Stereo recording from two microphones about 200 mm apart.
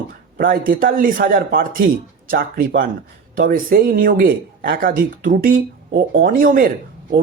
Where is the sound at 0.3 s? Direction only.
45° right (ahead or behind).